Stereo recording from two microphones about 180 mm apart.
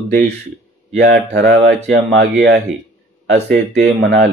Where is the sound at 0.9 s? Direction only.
65° right (ahead or behind).